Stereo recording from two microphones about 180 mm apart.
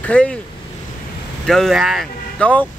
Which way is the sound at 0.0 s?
5° left (ahead or behind).